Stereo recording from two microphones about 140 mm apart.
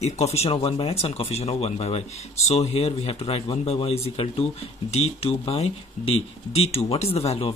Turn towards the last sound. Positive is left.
turn(degrees=45)  # may be behind; listen again after turning